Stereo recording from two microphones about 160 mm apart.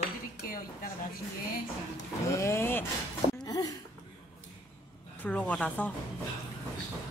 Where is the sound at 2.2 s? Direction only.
15° left (ahead or behind).